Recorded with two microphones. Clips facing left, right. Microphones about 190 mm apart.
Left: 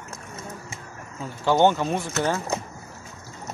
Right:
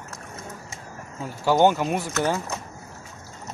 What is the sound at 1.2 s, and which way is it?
Speech, 10° right (ahead or behind).